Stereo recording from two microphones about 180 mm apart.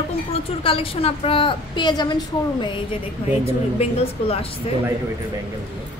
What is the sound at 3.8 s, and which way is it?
Speech, 35° left (ahead or behind).